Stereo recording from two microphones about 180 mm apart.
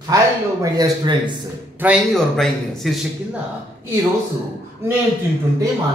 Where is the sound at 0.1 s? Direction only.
20° right (ahead or behind).